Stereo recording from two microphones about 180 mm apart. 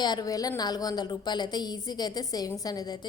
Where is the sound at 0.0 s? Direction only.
25° left (ahead or behind).